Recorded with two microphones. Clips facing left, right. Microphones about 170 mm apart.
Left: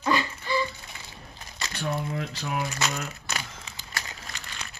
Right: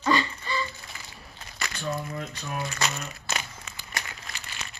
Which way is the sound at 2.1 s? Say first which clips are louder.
Left 3 dB; 80° left.